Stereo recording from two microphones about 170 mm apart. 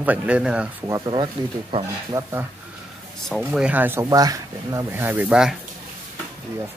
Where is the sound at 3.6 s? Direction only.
10° right (ahead or behind).